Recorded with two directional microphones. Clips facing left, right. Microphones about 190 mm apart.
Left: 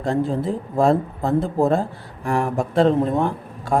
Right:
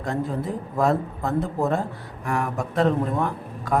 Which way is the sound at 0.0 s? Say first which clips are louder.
Left 5 dB; 30° left (ahead or behind).